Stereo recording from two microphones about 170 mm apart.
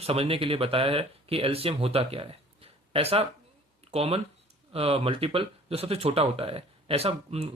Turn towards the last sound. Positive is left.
turn(degrees=-35)  # may be behind; listen again after turning